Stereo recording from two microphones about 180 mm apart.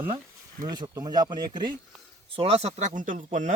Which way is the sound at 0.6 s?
20° right (ahead or behind).